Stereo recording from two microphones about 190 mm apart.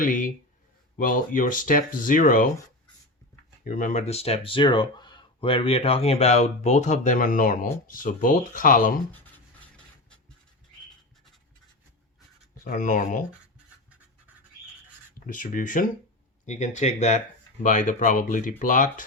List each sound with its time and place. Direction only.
0.0 s speech: 45° left (ahead or behind)
3.6 s speech: 45° left (ahead or behind)
9.7 s a sound: 5° left (ahead or behind)
12.6 s speech: 45° left (ahead or behind)
15.3 s speech: 45° left (ahead or behind)